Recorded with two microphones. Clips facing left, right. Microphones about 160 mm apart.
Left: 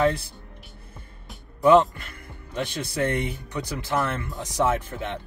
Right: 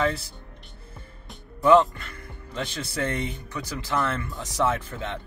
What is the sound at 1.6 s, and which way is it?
Speech, 20° left (ahead or behind).